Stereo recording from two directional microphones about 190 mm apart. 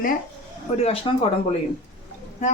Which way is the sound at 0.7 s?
30° left (ahead or behind).